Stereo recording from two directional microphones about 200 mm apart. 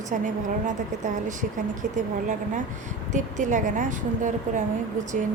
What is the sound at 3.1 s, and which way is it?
A woman's voice, 40° right (ahead or behind).